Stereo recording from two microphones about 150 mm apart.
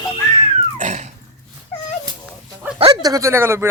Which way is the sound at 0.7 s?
50° right (ahead or behind).